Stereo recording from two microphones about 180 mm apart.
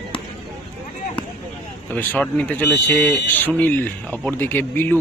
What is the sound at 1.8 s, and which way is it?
Speech, 10° left (ahead or behind).